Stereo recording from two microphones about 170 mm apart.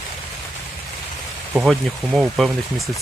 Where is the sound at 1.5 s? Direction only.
5° right (ahead or behind).